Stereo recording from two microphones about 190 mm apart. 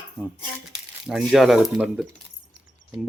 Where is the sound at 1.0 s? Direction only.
Centre (ahead or behind).